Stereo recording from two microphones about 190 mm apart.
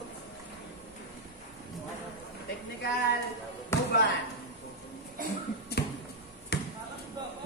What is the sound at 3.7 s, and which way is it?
Basketball bounce, 15° left (ahead or behind).